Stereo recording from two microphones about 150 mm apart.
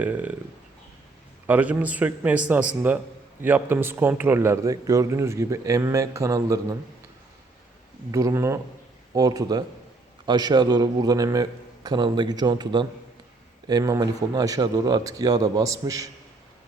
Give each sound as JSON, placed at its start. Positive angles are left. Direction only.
{"t": 0.0, "sound": "a man's voice", "side_deg": -10}
{"t": 1.5, "sound": "a man's voice", "side_deg": -10}
{"t": 8.1, "sound": "a man's voice", "side_deg": -20}